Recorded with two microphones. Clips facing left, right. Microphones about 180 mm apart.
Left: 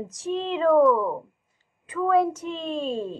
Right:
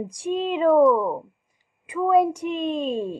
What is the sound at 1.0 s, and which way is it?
A woman's voice, 15° right (ahead or behind).